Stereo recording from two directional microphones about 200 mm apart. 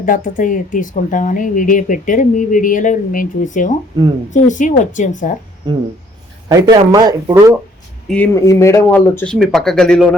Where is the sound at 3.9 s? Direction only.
20° right (ahead or behind).